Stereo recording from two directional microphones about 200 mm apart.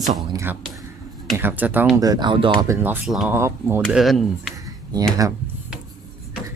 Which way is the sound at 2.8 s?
5° right (ahead or behind).